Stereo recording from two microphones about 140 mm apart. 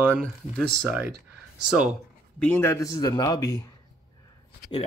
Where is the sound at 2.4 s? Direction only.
15° left (ahead or behind).